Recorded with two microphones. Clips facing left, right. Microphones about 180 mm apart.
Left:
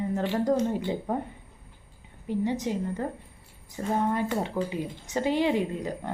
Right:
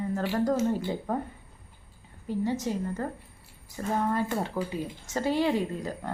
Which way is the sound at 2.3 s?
20° left (ahead or behind).